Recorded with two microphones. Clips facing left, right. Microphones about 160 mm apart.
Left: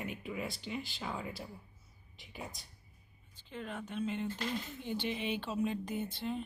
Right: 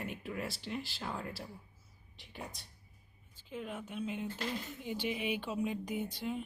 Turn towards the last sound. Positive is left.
turn(degrees=-10)  # may be behind; listen again after turning